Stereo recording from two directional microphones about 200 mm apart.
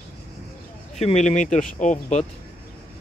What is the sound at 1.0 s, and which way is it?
Speech, 35° left (ahead or behind).